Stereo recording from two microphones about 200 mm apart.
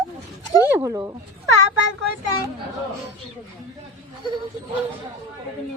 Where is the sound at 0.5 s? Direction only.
15° right (ahead or behind).